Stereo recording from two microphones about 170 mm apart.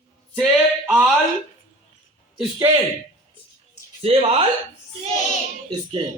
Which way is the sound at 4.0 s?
35° right (ahead or behind).